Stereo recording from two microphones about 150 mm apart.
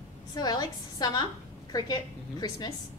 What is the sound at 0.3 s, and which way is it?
A woman's voice, 25° left (ahead or behind).